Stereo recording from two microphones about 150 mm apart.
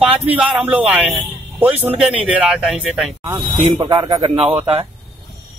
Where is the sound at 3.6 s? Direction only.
35° right (ahead or behind).